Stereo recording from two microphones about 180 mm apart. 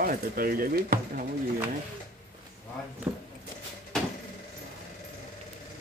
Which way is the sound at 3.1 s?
10° right (ahead or behind).